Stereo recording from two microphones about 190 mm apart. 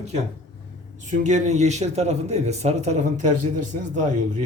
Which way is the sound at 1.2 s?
40° right (ahead or behind).